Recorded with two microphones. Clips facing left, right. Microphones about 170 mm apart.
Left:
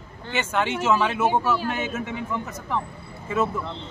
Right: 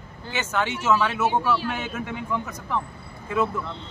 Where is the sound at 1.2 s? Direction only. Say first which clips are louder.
Left 1 dB; 45° left (ahead or behind).